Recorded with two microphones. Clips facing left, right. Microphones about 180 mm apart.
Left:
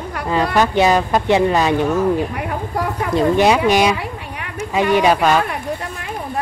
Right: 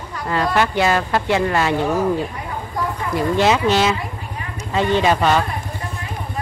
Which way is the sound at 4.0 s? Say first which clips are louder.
Left 2 dB; 75° left (ahead or behind).